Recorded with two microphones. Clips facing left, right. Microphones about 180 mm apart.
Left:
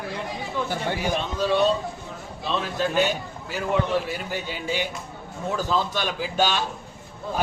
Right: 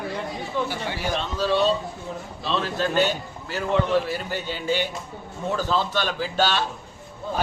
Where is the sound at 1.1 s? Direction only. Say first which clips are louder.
Right 1 dB; 15° left (ahead or behind).